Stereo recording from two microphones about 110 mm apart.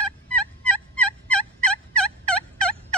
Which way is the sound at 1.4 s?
10° left (ahead or behind).